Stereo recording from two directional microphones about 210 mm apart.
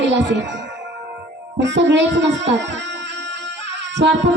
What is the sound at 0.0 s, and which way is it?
Speech, 55° right (ahead or behind).